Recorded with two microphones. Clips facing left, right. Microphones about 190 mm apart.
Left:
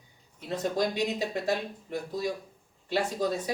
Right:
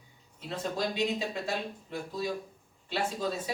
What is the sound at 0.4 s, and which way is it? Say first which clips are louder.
Speech: left 4 dB; 40° left (ahead or behind).